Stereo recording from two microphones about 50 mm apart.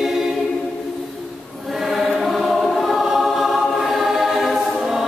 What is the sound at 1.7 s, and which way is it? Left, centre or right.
Choir, centre.